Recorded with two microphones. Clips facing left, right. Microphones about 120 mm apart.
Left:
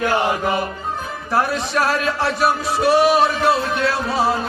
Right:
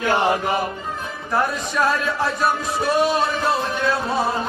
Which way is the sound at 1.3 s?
90° left.